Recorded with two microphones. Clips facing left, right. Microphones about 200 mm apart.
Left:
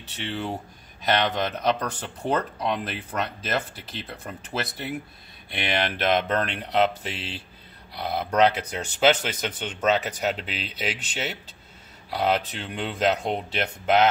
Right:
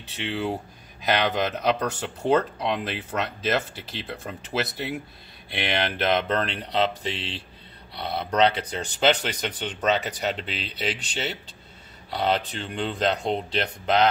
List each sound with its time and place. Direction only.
1.1 s speech: 5° right (ahead or behind)
12.1 s speech: 5° left (ahead or behind)